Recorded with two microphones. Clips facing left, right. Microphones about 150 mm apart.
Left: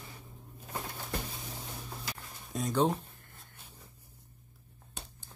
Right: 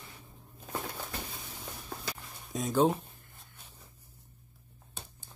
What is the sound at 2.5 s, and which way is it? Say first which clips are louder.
Speech: right 2 dB; centre (ahead or behind).